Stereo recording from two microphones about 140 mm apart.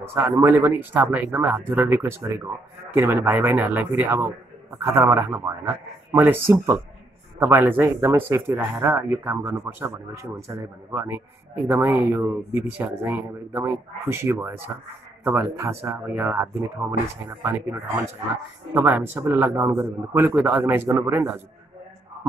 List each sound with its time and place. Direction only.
0.0 s a man's voice: 15° right (ahead or behind)